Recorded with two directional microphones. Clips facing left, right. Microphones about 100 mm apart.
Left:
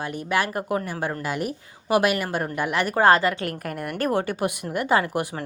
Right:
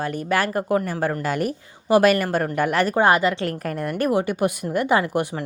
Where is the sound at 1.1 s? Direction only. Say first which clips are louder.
Right 4 dB; 10° left (ahead or behind).